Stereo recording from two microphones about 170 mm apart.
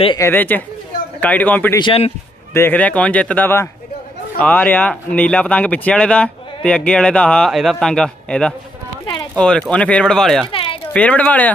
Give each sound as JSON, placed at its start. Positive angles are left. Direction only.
{"t": 0.2, "sound": "speech", "side_deg": 10}
{"t": 1.8, "sound": "a man's voice", "side_deg": 35}
{"t": 2.5, "sound": "speech", "side_deg": 10}
{"t": 10.5, "sound": "a sound", "side_deg": 30}
{"t": 10.9, "sound": "speech", "side_deg": 5}